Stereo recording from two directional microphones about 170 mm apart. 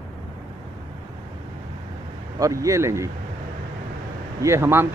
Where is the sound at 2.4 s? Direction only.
20° right (ahead or behind).